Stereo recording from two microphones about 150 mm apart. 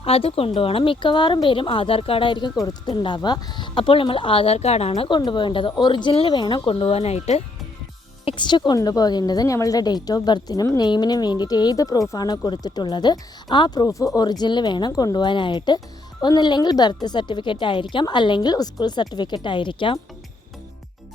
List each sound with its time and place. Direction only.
0.0 s speech: 40° left (ahead or behind)